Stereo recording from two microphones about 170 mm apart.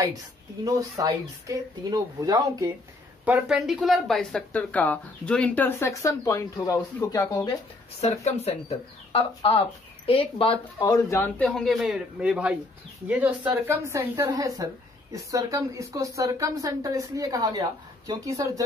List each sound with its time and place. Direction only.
0.7 s speech: 20° right (ahead or behind)
3.3 s speech: 5° right (ahead or behind); by 7.4 s 20° left (ahead or behind)
8.0 s speech: 40° left (ahead or behind); by 11.4 s 15° left (ahead or behind)
11.4 s a man's voice: centre (ahead or behind); by 18.6 s 20° right (ahead or behind)